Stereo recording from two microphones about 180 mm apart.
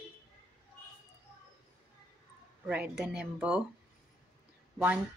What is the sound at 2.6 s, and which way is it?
A woman's voice, 5° right (ahead or behind).